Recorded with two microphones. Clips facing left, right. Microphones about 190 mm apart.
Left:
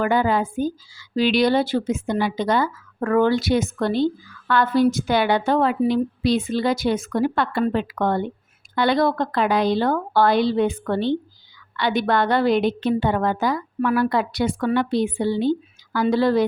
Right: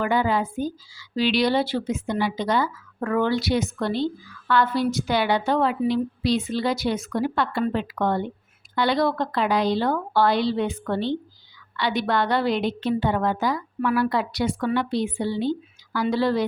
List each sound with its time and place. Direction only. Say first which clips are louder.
0.0 s a woman's voice: left 3 dB; 50° left (ahead or behind)